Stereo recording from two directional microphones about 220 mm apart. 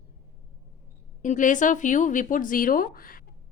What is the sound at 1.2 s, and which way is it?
A woman's voice, 35° left (ahead or behind).